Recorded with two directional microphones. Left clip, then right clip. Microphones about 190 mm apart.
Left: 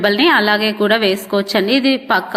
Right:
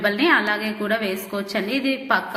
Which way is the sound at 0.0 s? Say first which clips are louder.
Left 6 dB; 45° left (ahead or behind).